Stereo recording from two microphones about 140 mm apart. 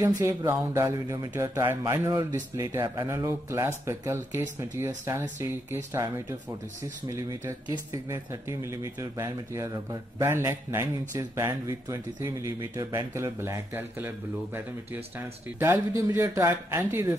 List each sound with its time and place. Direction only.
0.2 s a man's voice: 20° right (ahead or behind)